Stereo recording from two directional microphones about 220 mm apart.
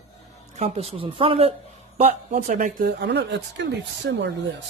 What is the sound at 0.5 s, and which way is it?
Speech, 30° right (ahead or behind).